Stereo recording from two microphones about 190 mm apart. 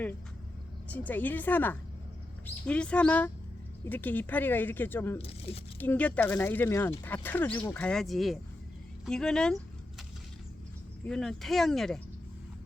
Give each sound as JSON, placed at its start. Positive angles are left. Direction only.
{"t": 0.9, "sound": "speech", "side_deg": 10}
{"t": 5.1, "sound": "speech", "side_deg": 30}
{"t": 5.8, "sound": "speech", "side_deg": 10}
{"t": 11.0, "sound": "speech", "side_deg": 5}